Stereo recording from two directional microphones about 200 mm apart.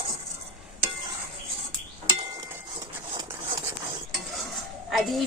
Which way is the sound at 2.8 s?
20° right (ahead or behind).